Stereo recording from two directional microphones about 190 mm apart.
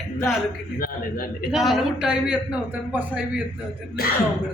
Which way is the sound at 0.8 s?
50° left (ahead or behind).